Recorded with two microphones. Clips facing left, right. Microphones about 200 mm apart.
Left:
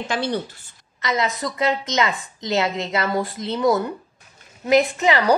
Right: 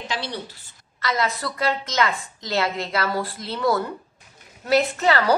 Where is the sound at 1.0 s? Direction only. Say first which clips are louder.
Left 2 dB; 20° left (ahead or behind).